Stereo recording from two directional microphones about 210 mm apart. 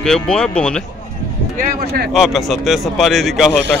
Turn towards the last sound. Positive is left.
turn(degrees=0)  # may be behind; listen again after turning